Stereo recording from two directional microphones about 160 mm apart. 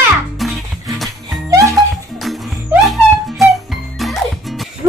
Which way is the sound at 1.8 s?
Centre (ahead or behind).